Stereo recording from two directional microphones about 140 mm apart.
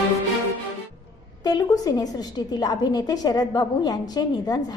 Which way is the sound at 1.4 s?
25° left (ahead or behind).